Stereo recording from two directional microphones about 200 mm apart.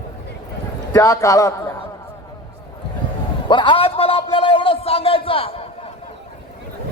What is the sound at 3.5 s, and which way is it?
A man's voice, 25° left (ahead or behind).